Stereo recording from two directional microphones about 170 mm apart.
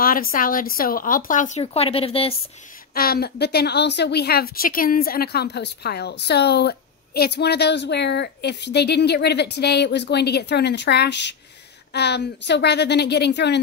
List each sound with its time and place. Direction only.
0.0 s speech: 55° left (ahead or behind)
1.6 s a woman's voice: 35° left (ahead or behind)
2.9 s a woman's voice: 65° left (ahead or behind); by 11.3 s 90° left
11.9 s a woman's voice: 80° left